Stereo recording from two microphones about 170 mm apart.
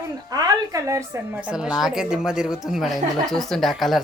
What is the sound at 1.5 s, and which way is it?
Speech, 5° right (ahead or behind).